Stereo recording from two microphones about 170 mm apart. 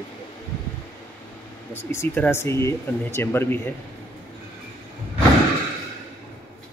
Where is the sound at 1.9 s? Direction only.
15° left (ahead or behind).